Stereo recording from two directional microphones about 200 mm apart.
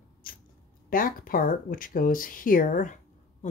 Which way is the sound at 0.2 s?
45° left (ahead or behind).